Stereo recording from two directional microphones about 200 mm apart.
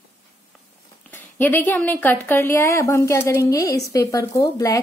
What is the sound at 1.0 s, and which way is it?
A woman's voice, 10° left (ahead or behind).